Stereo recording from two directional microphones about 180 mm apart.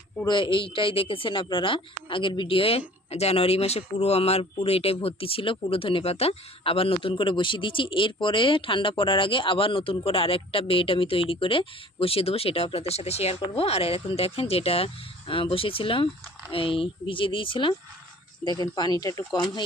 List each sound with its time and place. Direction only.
0.3 s speech: 25° left (ahead or behind)